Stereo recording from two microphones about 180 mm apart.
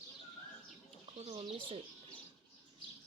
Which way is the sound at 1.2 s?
30° right (ahead or behind).